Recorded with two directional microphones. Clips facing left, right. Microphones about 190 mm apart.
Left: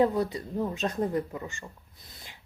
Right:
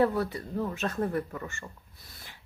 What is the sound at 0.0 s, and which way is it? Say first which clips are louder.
Speech: left 1 dB; 15° left (ahead or behind).